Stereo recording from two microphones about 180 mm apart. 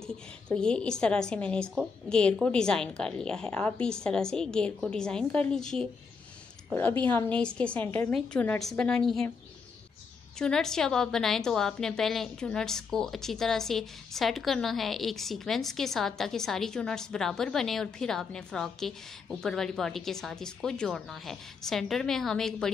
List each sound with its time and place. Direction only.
0.0 s a woman's voice: 5° left (ahead or behind)
10.4 s a woman's voice: 5° left (ahead or behind)